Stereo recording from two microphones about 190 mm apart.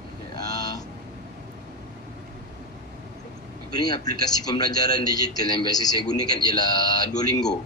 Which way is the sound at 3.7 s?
20° left (ahead or behind).